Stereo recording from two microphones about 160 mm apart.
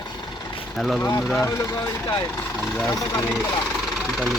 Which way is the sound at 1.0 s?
20° left (ahead or behind).